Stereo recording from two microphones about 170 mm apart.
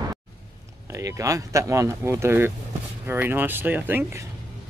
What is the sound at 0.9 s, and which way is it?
Speech, 20° right (ahead or behind).